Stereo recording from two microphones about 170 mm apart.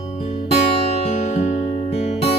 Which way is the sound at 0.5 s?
35° left (ahead or behind).